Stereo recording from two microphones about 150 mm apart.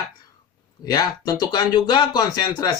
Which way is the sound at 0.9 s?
25° left (ahead or behind).